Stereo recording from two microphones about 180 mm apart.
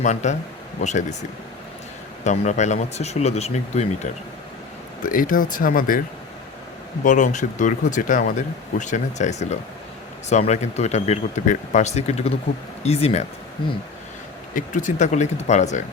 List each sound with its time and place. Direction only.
0.0 s speech: 40° left (ahead or behind)
2.2 s speech: 40° left (ahead or behind)
5.0 s speech: 50° left (ahead or behind)
7.0 s speech: 45° left (ahead or behind)
14.5 s speech: 45° left (ahead or behind)